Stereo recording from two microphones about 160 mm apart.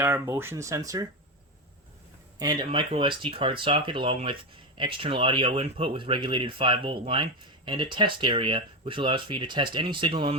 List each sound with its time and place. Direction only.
0.0 s speech: 15° right (ahead or behind)
2.4 s speech: 25° right (ahead or behind)